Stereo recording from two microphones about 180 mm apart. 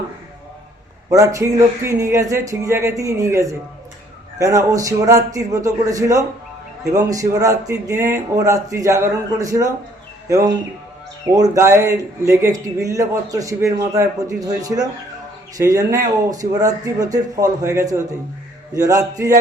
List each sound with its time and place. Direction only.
1.1 s a man's voice: 20° right (ahead or behind)
11.3 s a man's voice: 20° right (ahead or behind)